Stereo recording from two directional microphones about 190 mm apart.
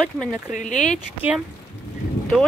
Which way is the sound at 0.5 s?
40° left (ahead or behind).